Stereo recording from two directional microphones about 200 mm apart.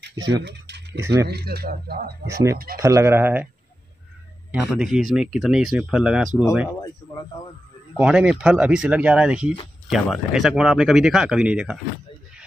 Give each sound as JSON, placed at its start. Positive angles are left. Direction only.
{"t": 0.3, "sound": "speech", "side_deg": -55}
{"t": 0.9, "sound": "speech", "side_deg": -10}
{"t": 1.2, "sound": "speech", "side_deg": -50}
{"t": 2.2, "sound": "speech", "side_deg": -15}
{"t": 2.5, "sound": "speech", "side_deg": -45}
{"t": 2.8, "sound": "speech", "side_deg": -15}
{"t": 4.5, "sound": "speech", "side_deg": -5}
{"t": 8.0, "sound": "speech", "side_deg": -5}